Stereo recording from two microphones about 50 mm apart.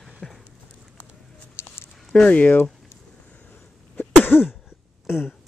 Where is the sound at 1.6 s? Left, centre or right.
Left.